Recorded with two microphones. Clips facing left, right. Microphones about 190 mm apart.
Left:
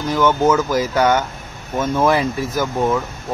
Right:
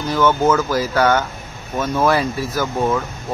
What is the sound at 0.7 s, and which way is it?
Speech, 15° left (ahead or behind).